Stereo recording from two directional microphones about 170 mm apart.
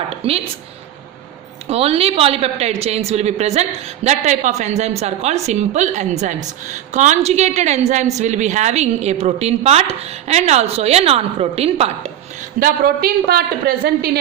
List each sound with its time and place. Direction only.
0.2 s a woman's voice: 35° right (ahead or behind)
1.7 s a woman's voice: 35° right (ahead or behind)
12.5 s speech: 60° right (ahead or behind)